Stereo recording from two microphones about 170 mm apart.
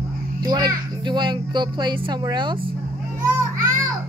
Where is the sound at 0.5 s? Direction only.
25° right (ahead or behind).